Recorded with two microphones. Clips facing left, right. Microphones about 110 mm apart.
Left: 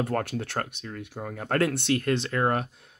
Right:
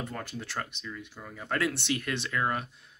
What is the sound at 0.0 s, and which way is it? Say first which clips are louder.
Speech: left 9 dB; 70° left (ahead or behind).